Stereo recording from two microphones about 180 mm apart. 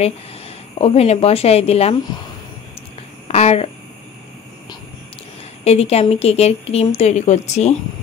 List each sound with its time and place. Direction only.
0.7 s a woman's voice: 35° left (ahead or behind)
3.3 s speech: 35° left (ahead or behind)
5.6 s a woman's voice: 35° left (ahead or behind)